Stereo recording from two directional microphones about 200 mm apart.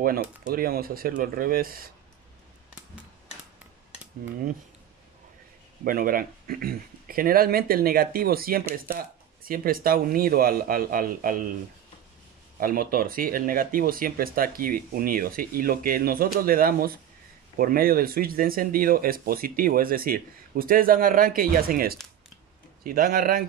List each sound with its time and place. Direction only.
0.5 s speech: 45° right (ahead or behind)
5.9 s speech: 45° right (ahead or behind)
12.5 s speech: 45° right (ahead or behind)